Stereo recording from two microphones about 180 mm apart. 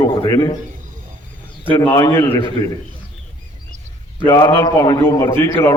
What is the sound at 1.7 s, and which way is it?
Speech, 25° left (ahead or behind).